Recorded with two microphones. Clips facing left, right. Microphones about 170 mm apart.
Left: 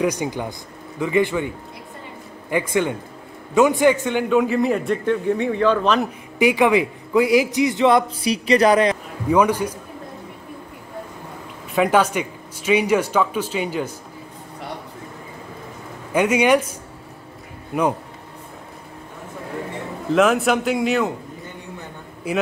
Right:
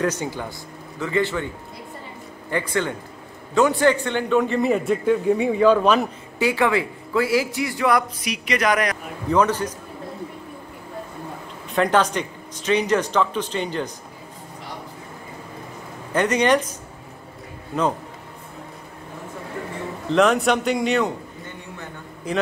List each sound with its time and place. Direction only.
0.0 s speech: 15° left (ahead or behind)
2.7 s a man's voice: 15° left (ahead or behind); by 6.0 s 5° right (ahead or behind)
6.3 s a man's voice: 15° left (ahead or behind)
9.3 s speech: 10° left (ahead or behind)
11.7 s speech: 10° left (ahead or behind)
16.1 s speech: 10° left (ahead or behind)
17.7 s speech: 10° left (ahead or behind)
20.1 s a man's voice: 5° left (ahead or behind)
22.2 s speech: 10° left (ahead or behind)